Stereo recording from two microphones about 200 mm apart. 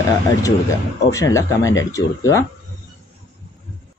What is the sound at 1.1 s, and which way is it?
Speech, 15° left (ahead or behind).